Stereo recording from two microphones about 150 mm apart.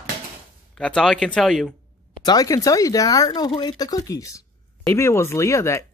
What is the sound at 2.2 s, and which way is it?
Speech, 25° left (ahead or behind).